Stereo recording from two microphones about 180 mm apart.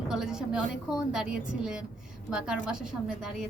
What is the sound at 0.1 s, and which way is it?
A woman's voice, 5° right (ahead or behind).